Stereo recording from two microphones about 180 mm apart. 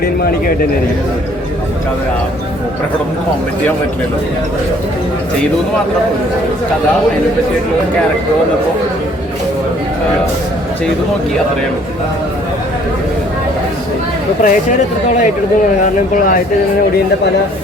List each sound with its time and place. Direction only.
0.0 s speech: 55° left (ahead or behind)
14.4 s speech: 45° left (ahead or behind)